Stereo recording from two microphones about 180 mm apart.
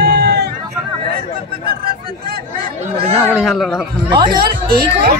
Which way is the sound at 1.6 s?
55° right (ahead or behind).